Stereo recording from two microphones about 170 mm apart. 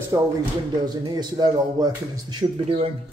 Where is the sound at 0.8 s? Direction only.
25° right (ahead or behind).